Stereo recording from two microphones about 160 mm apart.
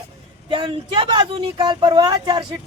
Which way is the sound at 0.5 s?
30° right (ahead or behind).